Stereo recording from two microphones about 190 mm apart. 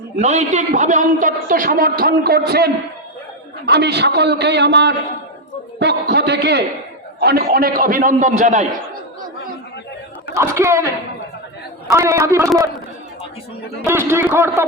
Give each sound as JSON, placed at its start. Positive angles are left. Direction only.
{"t": 0.2, "sound": "a man's voice", "side_deg": -35}
{"t": 10.3, "sound": "speech", "side_deg": -15}
{"t": 11.9, "sound": "speech", "side_deg": -15}
{"t": 13.8, "sound": "speech", "side_deg": -10}